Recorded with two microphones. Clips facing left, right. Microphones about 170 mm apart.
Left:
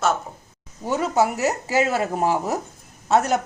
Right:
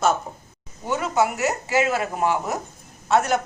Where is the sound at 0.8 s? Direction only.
35° left (ahead or behind).